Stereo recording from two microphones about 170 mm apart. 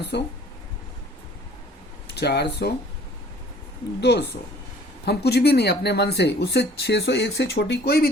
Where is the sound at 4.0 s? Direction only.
85° left.